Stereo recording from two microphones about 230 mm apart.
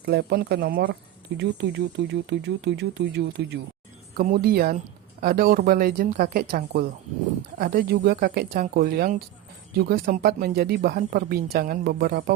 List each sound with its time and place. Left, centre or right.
0.0 s speech: right